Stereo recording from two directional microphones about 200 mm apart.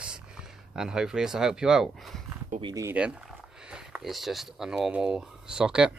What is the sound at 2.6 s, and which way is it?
Speech, 15° right (ahead or behind).